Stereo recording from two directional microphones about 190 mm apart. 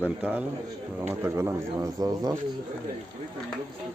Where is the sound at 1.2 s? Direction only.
15° right (ahead or behind).